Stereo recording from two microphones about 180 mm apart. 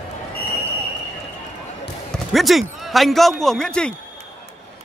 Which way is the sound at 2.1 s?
Centre (ahead or behind).